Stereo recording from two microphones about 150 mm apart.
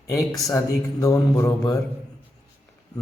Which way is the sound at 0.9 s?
20° left (ahead or behind).